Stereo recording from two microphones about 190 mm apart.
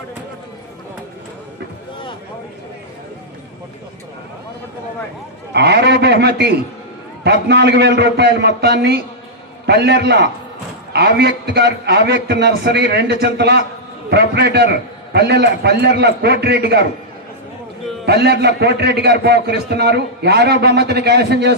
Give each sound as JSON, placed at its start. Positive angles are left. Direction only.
{"t": 5.5, "sound": "a sound", "side_deg": -60}
{"t": 7.4, "sound": "a man's voice", "side_deg": -60}
{"t": 18.0, "sound": "a man's voice", "side_deg": -60}